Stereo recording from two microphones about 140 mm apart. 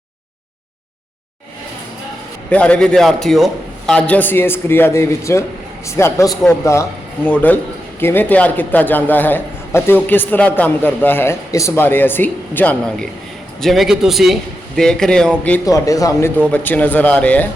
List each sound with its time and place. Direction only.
2.5 s a man's voice: 10° left (ahead or behind)
15.6 s speech: 25° left (ahead or behind)
16.5 s a man's voice: 10° left (ahead or behind)